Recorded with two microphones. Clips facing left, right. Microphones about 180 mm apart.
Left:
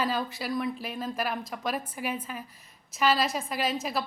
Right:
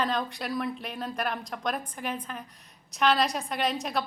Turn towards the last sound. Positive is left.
turn(degrees=0)  # may be behind; listen again after turning